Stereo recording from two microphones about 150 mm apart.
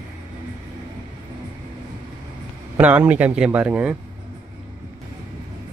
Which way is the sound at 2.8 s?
10° right (ahead or behind).